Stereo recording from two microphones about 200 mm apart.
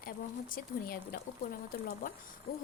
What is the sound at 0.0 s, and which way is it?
Speech, 45° left (ahead or behind).